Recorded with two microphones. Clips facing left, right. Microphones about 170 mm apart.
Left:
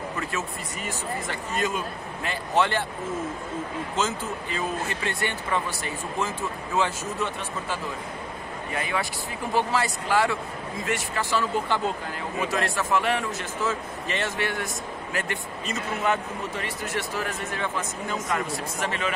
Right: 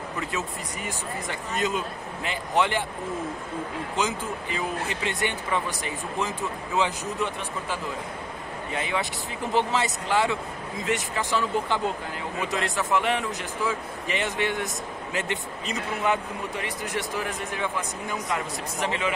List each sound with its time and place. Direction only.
0.2 s speech: 15° right (ahead or behind)
3.9 s speech: 15° right (ahead or behind)
8.7 s speech: 20° right (ahead or behind)